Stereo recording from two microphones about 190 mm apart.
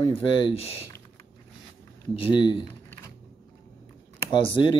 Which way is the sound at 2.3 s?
25° left (ahead or behind).